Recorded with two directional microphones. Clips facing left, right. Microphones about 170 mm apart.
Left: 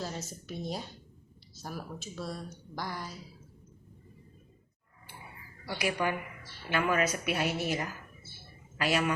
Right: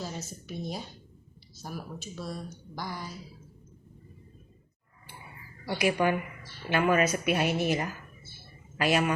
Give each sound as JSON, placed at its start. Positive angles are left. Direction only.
{"t": 0.0, "sound": "speech", "side_deg": -5}
{"t": 5.6, "sound": "a woman's voice", "side_deg": -20}
{"t": 8.8, "sound": "a woman's voice", "side_deg": -20}